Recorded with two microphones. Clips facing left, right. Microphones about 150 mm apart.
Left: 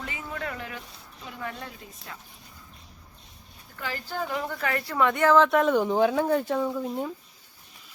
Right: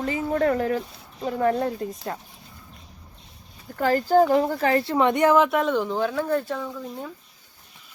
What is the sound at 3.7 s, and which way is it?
A woman's voice, 45° right (ahead or behind).